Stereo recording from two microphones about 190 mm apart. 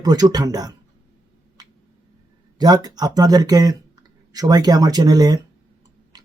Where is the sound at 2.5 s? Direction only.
20° right (ahead or behind).